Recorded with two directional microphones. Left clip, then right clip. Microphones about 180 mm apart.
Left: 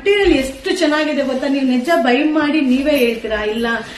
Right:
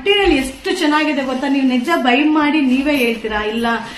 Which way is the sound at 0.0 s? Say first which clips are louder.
Even; 20° right (ahead or behind).